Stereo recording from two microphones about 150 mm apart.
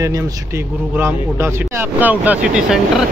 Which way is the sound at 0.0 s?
20° right (ahead or behind).